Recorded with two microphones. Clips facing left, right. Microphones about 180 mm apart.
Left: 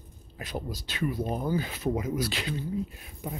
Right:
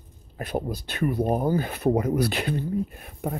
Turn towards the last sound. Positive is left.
turn(degrees=-55)  # may be behind; listen again after turning